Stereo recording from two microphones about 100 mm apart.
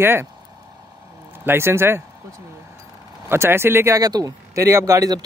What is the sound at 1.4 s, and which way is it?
Speech, 25° right (ahead or behind).